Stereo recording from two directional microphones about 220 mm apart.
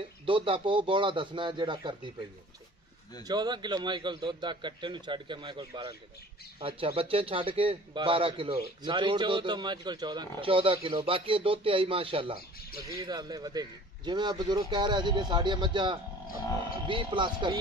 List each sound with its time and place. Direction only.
0.2 s a man's voice: 25° right (ahead or behind)
3.3 s a man's voice: 20° right (ahead or behind)